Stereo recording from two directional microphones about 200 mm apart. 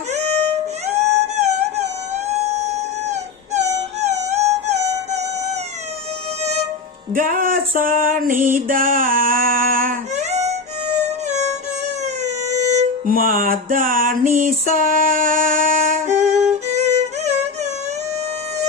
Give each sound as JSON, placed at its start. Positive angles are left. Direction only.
{"t": 0.1, "sound": "music", "side_deg": -35}
{"t": 3.5, "sound": "music", "side_deg": -35}
{"t": 7.2, "sound": "music", "side_deg": -40}
{"t": 12.4, "sound": "music", "side_deg": -35}